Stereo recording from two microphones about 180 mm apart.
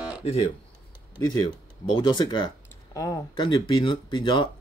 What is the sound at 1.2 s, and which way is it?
Speech, 25° left (ahead or behind).